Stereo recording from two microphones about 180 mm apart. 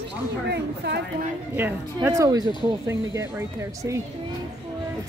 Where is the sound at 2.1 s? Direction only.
20° right (ahead or behind).